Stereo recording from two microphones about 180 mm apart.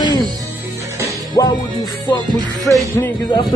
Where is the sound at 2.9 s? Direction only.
15° left (ahead or behind).